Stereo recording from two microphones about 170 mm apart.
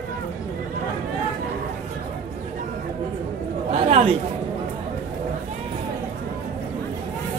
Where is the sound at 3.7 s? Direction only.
40° right (ahead or behind).